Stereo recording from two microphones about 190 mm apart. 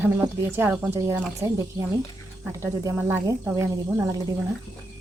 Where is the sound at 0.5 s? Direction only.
10° right (ahead or behind).